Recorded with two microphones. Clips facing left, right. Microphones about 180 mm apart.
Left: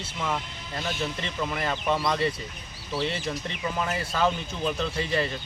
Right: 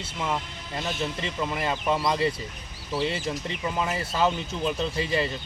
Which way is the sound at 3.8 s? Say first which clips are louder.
Even; 25° right (ahead or behind).